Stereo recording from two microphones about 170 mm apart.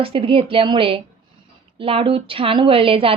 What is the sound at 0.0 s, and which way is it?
A woman's voice, 35° right (ahead or behind).